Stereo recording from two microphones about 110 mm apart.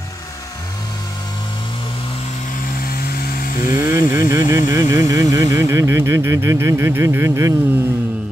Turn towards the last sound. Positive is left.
turn(degrees=-25)  # may be behind; listen again after turning